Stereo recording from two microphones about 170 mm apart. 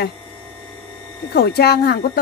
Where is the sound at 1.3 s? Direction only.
70° left (ahead or behind).